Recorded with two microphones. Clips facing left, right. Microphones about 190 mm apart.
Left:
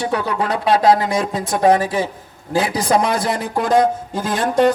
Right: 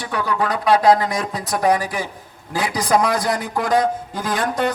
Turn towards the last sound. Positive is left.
turn(degrees=25)  # may be behind; listen again after turning